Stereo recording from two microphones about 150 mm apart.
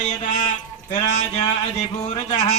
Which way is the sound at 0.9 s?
50° left (ahead or behind).